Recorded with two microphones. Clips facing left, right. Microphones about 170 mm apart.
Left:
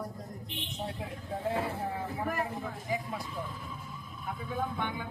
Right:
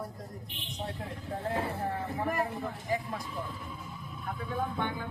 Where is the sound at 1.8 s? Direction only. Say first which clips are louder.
Right 1 dB; 5° right (ahead or behind).